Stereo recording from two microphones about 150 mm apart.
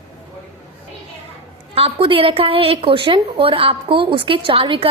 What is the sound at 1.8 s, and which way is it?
A woman's voice, 40° right (ahead or behind).